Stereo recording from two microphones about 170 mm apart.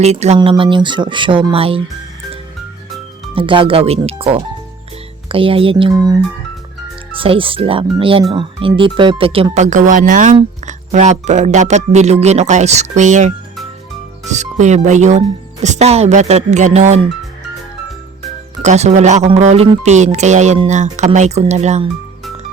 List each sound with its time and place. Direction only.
0.0 s speech: 40° right (ahead or behind)
0.3 s speech: 30° right (ahead or behind)
3.3 s speech: 30° right (ahead or behind)
7.2 s speech: 30° right (ahead or behind)
18.6 s speech: 40° right (ahead or behind)